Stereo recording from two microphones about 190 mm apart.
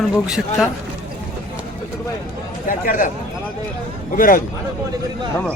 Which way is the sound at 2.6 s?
45° left (ahead or behind).